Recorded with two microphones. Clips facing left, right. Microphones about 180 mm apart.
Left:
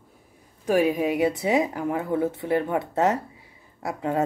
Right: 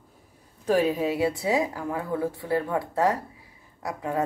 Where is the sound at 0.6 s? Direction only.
15° left (ahead or behind).